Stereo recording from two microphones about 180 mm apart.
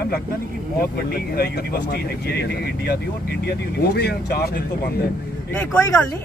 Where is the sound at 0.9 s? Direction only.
60° left (ahead or behind).